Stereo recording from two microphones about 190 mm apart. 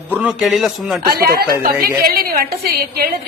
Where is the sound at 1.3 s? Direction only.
55° right (ahead or behind).